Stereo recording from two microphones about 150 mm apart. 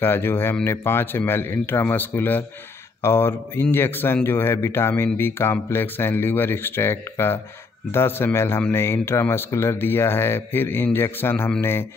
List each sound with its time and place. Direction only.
0.0 s speech: 15° left (ahead or behind)